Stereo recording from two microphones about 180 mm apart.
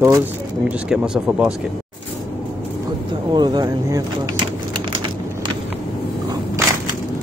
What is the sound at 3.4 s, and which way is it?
Speech, 25° right (ahead or behind).